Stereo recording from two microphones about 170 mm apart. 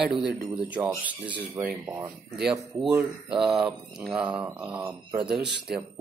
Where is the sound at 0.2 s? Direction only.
5° right (ahead or behind).